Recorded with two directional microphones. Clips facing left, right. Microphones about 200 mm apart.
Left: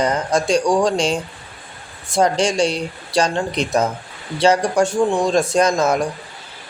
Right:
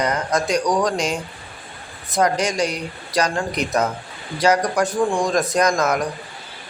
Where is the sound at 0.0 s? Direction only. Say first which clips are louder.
Left 3 dB; 30° left (ahead or behind).